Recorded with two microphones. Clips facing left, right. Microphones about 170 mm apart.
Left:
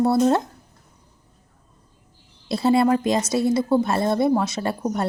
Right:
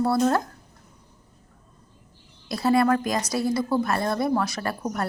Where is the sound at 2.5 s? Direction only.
25° left (ahead or behind).